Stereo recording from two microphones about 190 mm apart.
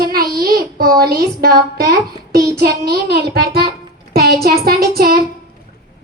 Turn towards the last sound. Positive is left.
turn(degrees=-55)  # may be behind; listen again after turning